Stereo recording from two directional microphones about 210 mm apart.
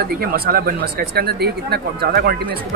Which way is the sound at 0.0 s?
45° right (ahead or behind).